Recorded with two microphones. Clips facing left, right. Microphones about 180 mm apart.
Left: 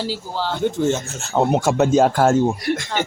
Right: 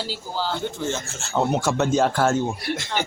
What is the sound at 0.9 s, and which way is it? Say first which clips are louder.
Speech: left 6 dB; 40° left (ahead or behind).